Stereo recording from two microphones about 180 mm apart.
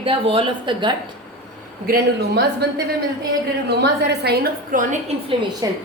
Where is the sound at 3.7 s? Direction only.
65° right (ahead or behind).